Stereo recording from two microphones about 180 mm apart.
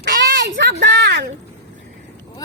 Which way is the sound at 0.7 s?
75° right (ahead or behind).